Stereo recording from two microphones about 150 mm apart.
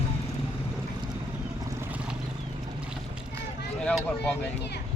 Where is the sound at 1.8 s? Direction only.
10° right (ahead or behind).